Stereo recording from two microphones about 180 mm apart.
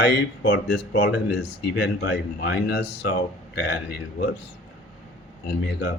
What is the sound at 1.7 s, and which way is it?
Speech, 80° left.